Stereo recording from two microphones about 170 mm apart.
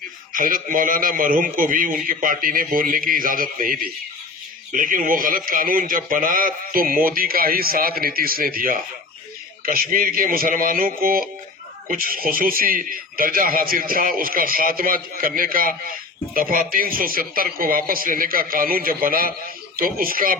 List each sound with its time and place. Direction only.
0.3 s a man's voice: 55° right (ahead or behind)